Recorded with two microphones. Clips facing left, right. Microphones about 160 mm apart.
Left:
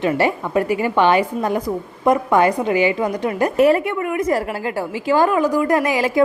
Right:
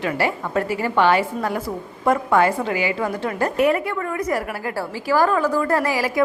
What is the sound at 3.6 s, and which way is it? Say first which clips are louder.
Speech: left 5 dB; 35° left (ahead or behind).